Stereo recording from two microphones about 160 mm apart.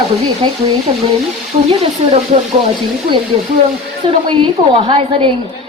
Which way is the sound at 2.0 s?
40° right (ahead or behind).